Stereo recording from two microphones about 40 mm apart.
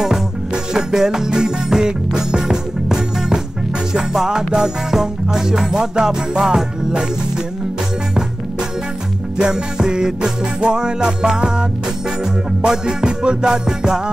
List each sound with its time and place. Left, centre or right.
0.7 s music: centre
9.8 s music: centre
12.6 s music: right